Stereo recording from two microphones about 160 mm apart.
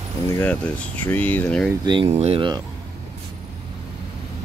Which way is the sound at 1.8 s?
30° right (ahead or behind).